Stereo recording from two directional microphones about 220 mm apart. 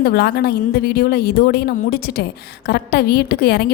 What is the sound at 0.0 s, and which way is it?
Speech, 45° left (ahead or behind).